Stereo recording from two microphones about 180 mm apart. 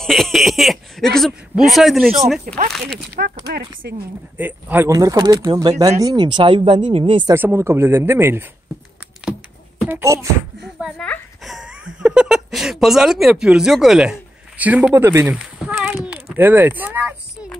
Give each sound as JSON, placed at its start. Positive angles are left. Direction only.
{"t": 0.0, "sound": "a sound", "side_deg": 0}
{"t": 1.7, "sound": "a man's voice", "side_deg": 0}
{"t": 2.4, "sound": "speech", "side_deg": -45}
{"t": 3.2, "sound": "a woman's voice", "side_deg": -60}
{"t": 4.4, "sound": "speech", "side_deg": -10}
{"t": 7.3, "sound": "speech", "side_deg": -15}
{"t": 9.8, "sound": "speech", "side_deg": -15}
{"t": 10.8, "sound": "speech", "side_deg": 0}
{"t": 15.3, "sound": "speech", "side_deg": -5}